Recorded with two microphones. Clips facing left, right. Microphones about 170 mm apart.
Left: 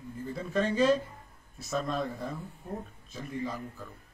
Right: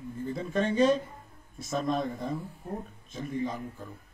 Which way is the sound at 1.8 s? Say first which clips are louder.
Right 3 dB; 20° right (ahead or behind).